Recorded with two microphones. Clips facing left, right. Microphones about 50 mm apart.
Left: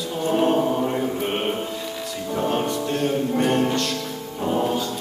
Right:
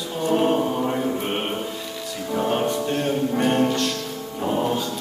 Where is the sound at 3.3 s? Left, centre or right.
Centre.